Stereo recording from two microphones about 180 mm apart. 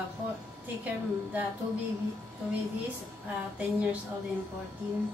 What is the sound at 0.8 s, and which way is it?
Speech, 10° right (ahead or behind).